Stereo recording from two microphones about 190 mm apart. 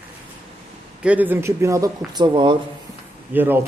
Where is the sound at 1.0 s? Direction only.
5° right (ahead or behind); by 2.5 s 25° right (ahead or behind).